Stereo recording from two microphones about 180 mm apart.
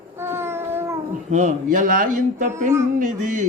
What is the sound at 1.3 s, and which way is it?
Speech, 45° right (ahead or behind).